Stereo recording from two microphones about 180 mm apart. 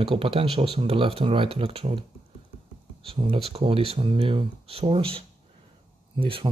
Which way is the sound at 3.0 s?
30° right (ahead or behind).